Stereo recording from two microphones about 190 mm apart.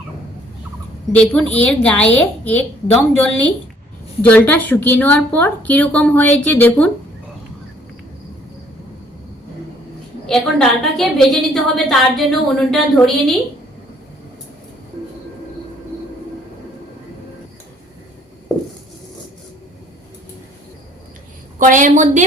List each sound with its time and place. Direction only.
1.1 s a woman's voice: 5° left (ahead or behind)
10.2 s a woman's voice: 5° left (ahead or behind)
21.6 s a woman's voice: 40° right (ahead or behind)